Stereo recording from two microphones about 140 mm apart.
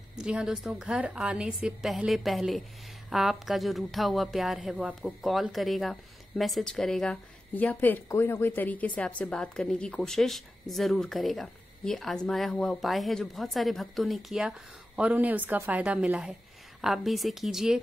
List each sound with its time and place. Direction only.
0.1 s a woman's voice: 5° right (ahead or behind)